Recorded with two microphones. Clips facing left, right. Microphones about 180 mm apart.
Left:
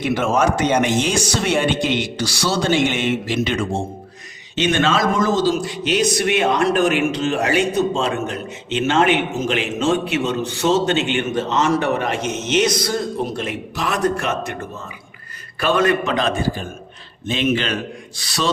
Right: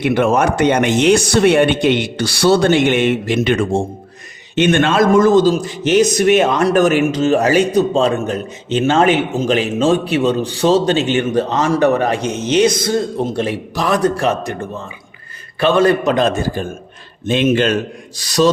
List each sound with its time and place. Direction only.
0.0 s a man's voice: 60° right (ahead or behind); by 16.1 s 35° right (ahead or behind)
16.1 s a man's voice: 45° right (ahead or behind)